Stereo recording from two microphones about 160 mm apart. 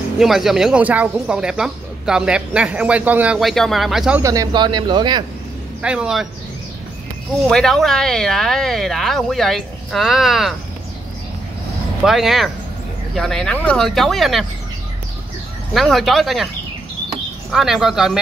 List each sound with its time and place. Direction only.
0.2 s speech: centre (ahead or behind)
4.2 s speech: 20° right (ahead or behind)
5.8 s speech: 5° right (ahead or behind)
7.4 s speech: centre (ahead or behind)
12.0 s speech: centre (ahead or behind)
15.7 s speech: centre (ahead or behind)
17.5 s speech: centre (ahead or behind)